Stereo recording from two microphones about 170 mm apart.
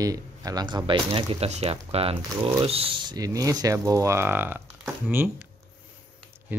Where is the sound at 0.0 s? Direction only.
20° right (ahead or behind).